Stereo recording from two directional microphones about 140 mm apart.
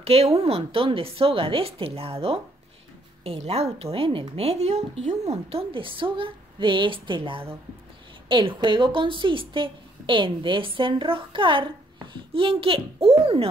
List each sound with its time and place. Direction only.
0.0 s a woman's voice: 45° right (ahead or behind)